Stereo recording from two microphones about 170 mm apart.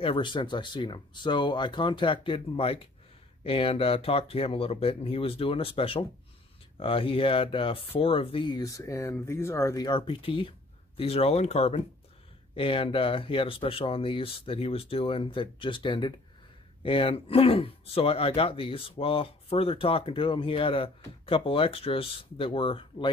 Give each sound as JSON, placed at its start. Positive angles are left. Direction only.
{"t": 0.0, "sound": "speech", "side_deg": 30}